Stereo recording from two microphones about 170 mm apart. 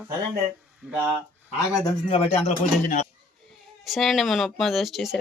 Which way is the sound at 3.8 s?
Centre (ahead or behind).